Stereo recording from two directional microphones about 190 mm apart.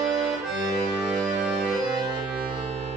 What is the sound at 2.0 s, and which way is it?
Music, 20° right (ahead or behind).